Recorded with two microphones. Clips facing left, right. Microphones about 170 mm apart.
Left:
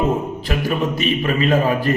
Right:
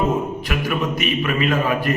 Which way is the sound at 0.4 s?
30° left (ahead or behind).